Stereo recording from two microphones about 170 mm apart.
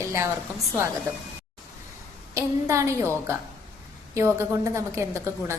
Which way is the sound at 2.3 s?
20° right (ahead or behind).